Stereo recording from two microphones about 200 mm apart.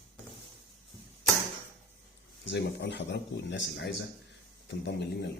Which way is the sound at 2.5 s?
60° left (ahead or behind).